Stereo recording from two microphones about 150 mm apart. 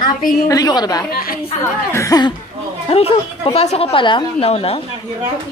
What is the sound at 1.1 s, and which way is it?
Speech, 75° left (ahead or behind).